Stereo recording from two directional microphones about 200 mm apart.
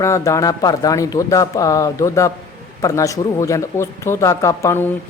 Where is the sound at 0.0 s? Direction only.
15° left (ahead or behind).